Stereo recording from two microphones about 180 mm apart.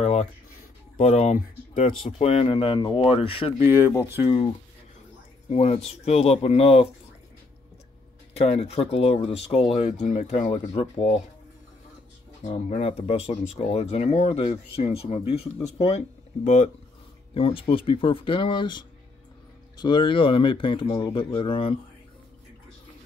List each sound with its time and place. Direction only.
0.0 s a sound: 35° left (ahead or behind)
0.9 s speech: 40° left (ahead or behind)
3.5 s speech: 15° right (ahead or behind)
4.2 s speech: 25° left (ahead or behind)
5.5 s speech: 40° left (ahead or behind)
8.4 s speech: 35° left (ahead or behind)
12.4 s speech: 40° left (ahead or behind)